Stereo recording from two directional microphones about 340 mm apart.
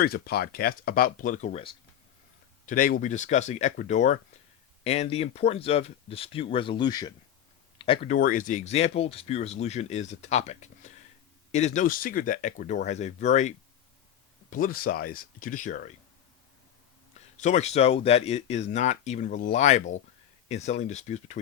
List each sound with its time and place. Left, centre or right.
0.0 s speech: left
14.5 s speech: left
17.2 s speech: left